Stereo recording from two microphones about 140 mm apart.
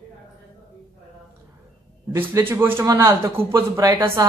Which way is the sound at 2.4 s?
15° right (ahead or behind).